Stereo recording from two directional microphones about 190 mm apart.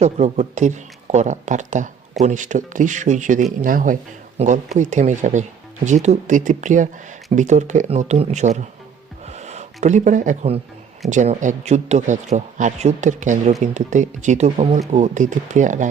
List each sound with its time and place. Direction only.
0.0 s a man's voice: 35° right (ahead or behind)
9.2 s gasp: 35° right (ahead or behind)
11.1 s a man's voice: 40° right (ahead or behind)